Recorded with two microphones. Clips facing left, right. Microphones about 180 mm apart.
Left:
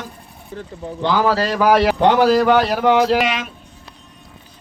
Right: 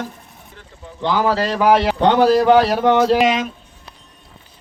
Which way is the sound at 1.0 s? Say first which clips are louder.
Left 1 dB; 20° right (ahead or behind).